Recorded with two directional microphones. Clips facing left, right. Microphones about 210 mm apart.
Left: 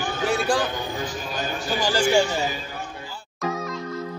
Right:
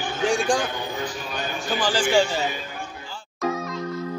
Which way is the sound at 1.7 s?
10° left (ahead or behind).